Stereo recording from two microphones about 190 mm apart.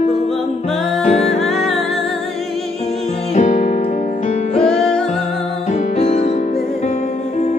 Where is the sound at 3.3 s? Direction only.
40° left (ahead or behind).